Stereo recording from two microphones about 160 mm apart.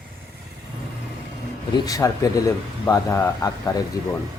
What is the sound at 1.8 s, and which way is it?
Speech, 20° left (ahead or behind).